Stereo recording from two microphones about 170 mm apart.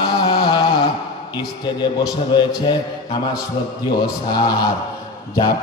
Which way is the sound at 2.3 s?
25° left (ahead or behind).